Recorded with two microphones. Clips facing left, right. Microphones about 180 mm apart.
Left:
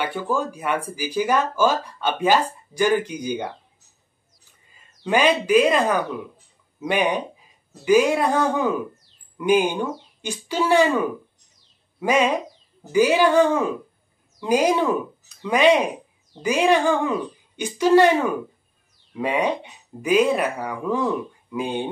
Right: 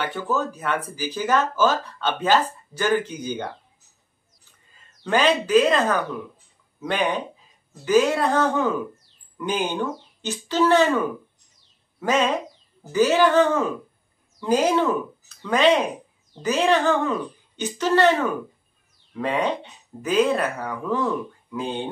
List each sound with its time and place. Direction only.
0.0 s speech: 10° left (ahead or behind)
5.0 s speech: 10° left (ahead or behind)